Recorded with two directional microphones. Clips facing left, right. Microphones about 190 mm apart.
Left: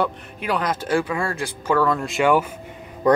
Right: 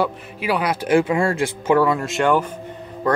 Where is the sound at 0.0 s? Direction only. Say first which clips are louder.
Right 2 dB; 5° right (ahead or behind); by 1.8 s 25° right (ahead or behind).